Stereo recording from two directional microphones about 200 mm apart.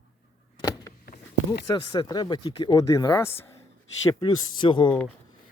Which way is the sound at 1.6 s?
20° left (ahead or behind).